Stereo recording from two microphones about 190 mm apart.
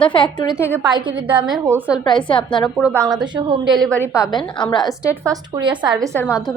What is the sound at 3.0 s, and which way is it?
Speech, 20° right (ahead or behind).